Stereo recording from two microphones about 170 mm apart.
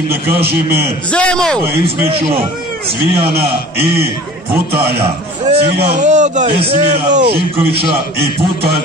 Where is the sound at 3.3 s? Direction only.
65° right (ahead or behind).